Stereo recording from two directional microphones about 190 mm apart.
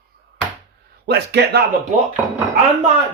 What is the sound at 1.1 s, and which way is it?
Speech, 60° right (ahead or behind).